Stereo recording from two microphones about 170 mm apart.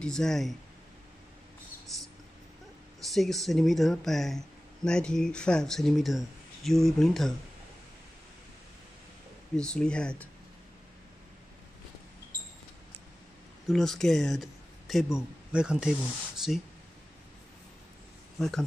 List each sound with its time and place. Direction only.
0.0 s speech: 5° left (ahead or behind)
3.0 s speech: centre (ahead or behind)
9.6 s speech: 5° left (ahead or behind)
13.7 s speech: centre (ahead or behind)
18.4 s speech: centre (ahead or behind)